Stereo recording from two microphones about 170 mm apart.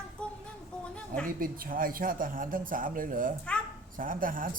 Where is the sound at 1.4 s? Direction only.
55° right (ahead or behind).